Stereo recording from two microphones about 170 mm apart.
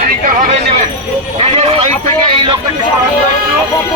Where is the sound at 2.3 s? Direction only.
30° right (ahead or behind).